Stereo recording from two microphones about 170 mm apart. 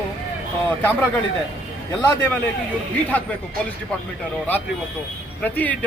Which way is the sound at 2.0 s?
10° left (ahead or behind).